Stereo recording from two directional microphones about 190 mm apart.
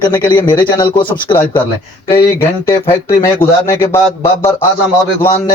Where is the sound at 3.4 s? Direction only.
15° left (ahead or behind).